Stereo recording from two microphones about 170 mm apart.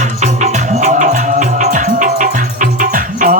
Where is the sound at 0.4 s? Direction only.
45° right (ahead or behind).